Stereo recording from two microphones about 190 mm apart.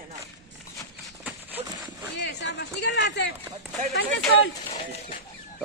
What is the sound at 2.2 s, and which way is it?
Speech, 70° left (ahead or behind).